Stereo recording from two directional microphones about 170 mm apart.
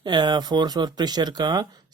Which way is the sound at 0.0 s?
25° right (ahead or behind).